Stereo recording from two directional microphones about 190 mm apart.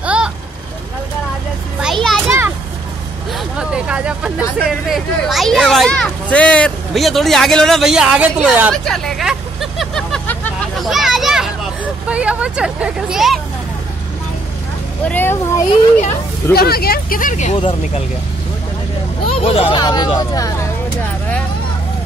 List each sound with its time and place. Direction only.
0.0 s vehicle: 5° right (ahead or behind)
1.8 s children playing: centre (ahead or behind)
2.2 s children playing: 15° right (ahead or behind)
3.3 s vehicle: 5° right (ahead or behind)
4.6 s speech: centre (ahead or behind)
8.8 s vehicle: 5° left (ahead or behind)
10.9 s children playing: centre (ahead or behind)
15.0 s a child's voice: 10° left (ahead or behind)
16.5 s speech: 55° left (ahead or behind); by 18.0 s 30° left (ahead or behind)
19.2 s speech: 30° left (ahead or behind)